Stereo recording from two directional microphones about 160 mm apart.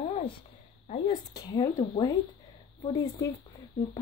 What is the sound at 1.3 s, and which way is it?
Speech, 25° left (ahead or behind).